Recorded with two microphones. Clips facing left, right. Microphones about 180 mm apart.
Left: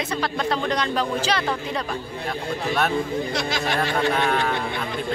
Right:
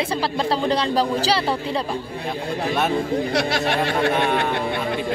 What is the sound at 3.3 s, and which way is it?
Speech, 65° right (ahead or behind).